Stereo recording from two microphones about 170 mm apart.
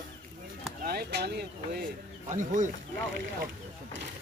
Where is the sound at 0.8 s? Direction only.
65° right (ahead or behind).